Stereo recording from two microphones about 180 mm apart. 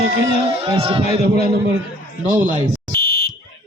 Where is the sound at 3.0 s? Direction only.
55° left (ahead or behind).